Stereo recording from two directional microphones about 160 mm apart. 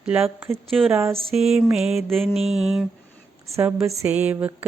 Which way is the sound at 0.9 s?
15° right (ahead or behind).